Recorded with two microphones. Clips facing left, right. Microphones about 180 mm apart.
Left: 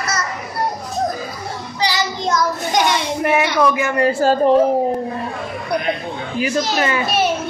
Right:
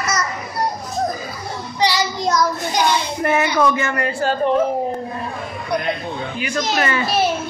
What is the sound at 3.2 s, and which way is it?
Speech, 10° left (ahead or behind).